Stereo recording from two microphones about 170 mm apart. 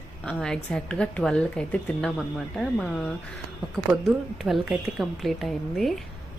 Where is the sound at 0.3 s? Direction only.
5° left (ahead or behind).